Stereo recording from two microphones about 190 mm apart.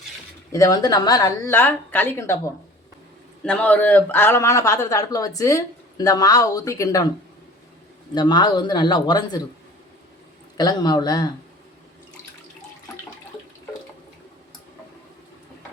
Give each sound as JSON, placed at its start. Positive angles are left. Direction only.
{"t": 0.5, "sound": "a man's voice", "side_deg": 20}
{"t": 3.4, "sound": "a man's voice", "side_deg": 5}
{"t": 8.1, "sound": "speech", "side_deg": 20}
{"t": 10.6, "sound": "speech", "side_deg": 20}